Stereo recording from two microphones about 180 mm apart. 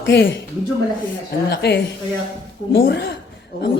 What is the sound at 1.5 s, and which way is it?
Speech, 65° left (ahead or behind).